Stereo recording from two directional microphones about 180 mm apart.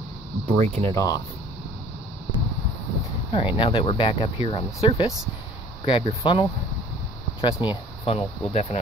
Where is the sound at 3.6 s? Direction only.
30° left (ahead or behind).